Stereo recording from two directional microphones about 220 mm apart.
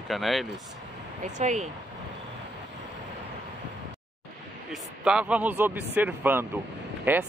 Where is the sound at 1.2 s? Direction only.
35° right (ahead or behind).